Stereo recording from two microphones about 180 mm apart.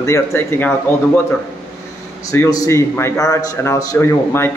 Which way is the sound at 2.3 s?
20° left (ahead or behind).